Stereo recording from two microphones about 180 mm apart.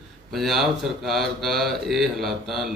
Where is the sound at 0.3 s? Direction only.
Centre (ahead or behind).